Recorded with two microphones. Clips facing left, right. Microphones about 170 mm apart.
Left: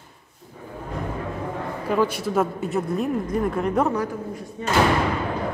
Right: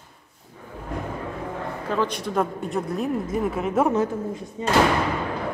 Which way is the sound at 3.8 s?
25° right (ahead or behind).